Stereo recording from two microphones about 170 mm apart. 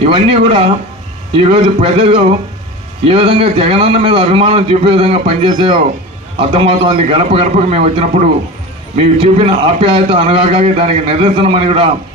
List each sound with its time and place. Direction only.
0.0 s a man's voice: 30° right (ahead or behind)